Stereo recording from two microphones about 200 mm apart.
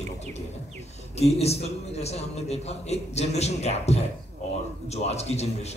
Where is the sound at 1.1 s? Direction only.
30° left (ahead or behind).